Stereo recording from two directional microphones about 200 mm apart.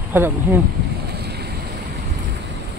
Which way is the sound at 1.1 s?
55° right (ahead or behind).